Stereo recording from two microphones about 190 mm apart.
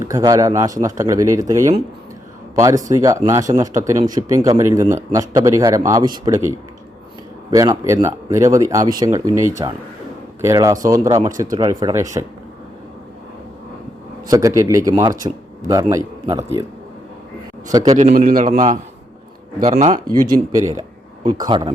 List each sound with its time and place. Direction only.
0.0 s speech: 20° right (ahead or behind)
14.3 s a man's voice: 15° right (ahead or behind)
17.7 s speech: 20° right (ahead or behind)
17.9 s a man's voice: 35° right (ahead or behind)
20.1 s speech: 20° right (ahead or behind)